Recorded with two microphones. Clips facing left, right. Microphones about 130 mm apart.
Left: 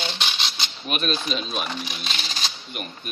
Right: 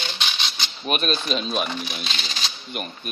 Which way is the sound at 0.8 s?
40° right (ahead or behind).